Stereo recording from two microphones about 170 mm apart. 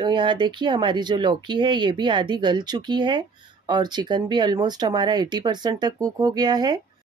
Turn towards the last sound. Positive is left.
turn(degrees=-25)  # may be behind; listen again after turning